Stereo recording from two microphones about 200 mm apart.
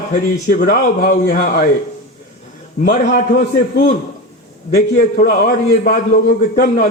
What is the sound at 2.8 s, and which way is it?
A man's voice, 45° left (ahead or behind).